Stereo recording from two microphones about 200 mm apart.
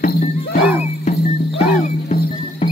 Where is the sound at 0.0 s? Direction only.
50° left (ahead or behind).